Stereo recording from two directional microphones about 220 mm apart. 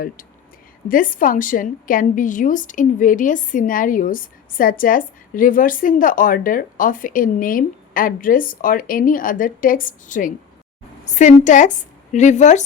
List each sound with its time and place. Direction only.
0.9 s a woman's voice: 40° left (ahead or behind)